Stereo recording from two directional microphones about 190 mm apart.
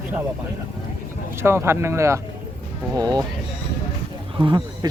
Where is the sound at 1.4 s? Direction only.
15° right (ahead or behind).